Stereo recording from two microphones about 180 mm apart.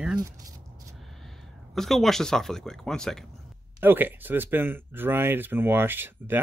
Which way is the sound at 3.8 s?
10° right (ahead or behind).